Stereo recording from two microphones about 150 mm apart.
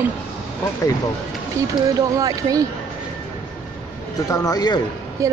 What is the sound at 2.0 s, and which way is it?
Speech, 25° right (ahead or behind).